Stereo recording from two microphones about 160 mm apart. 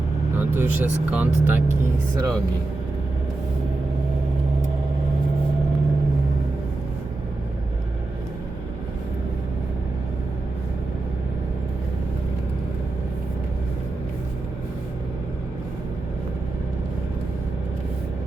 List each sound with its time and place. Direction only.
0.3 s speech: 15° right (ahead or behind)
2.1 s speech: 20° right (ahead or behind)